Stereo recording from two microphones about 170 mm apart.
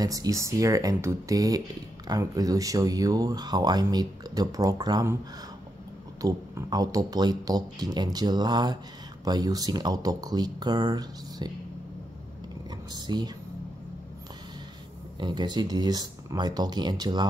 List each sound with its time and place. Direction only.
0.0 s speech: 20° right (ahead or behind)
6.2 s speech: 20° right (ahead or behind)
12.9 s speech: 25° right (ahead or behind)
15.1 s speech: 25° right (ahead or behind)